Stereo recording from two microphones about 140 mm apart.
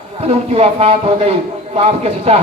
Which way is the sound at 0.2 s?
45° right (ahead or behind).